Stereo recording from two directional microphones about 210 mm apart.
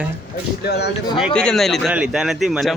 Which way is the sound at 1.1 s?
5° left (ahead or behind).